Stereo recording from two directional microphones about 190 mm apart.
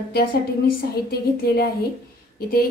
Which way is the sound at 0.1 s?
50° left (ahead or behind).